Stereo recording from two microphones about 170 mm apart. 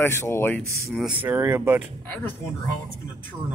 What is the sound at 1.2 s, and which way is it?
Speech, 10° right (ahead or behind).